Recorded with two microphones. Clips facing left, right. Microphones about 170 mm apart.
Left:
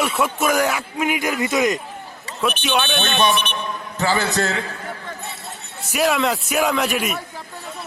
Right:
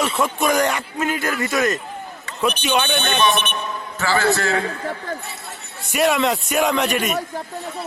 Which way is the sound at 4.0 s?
20° left (ahead or behind).